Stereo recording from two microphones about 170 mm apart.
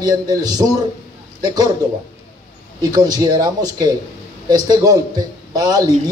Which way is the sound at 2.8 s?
25° right (ahead or behind).